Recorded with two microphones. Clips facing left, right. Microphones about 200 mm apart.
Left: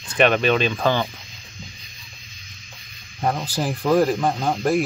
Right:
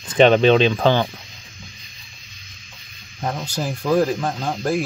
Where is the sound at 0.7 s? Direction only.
15° right (ahead or behind).